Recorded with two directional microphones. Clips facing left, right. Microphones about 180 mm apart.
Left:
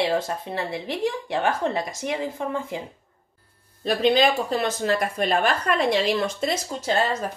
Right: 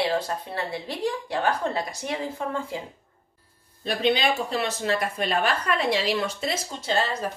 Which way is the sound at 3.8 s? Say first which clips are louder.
Left 4 dB; 40° left (ahead or behind).